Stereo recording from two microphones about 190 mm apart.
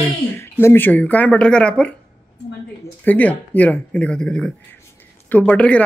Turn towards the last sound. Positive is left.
turn(degrees=5)  # may be behind; listen again after turning